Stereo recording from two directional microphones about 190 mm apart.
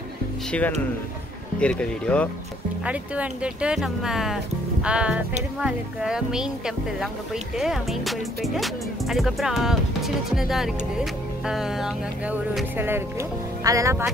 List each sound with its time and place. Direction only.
0.5 s speech: 5° left (ahead or behind)
2.8 s music: 5° right (ahead or behind)
13.7 s speech: 15° right (ahead or behind)